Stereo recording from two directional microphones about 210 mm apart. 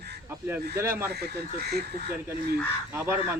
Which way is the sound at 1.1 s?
50° right (ahead or behind).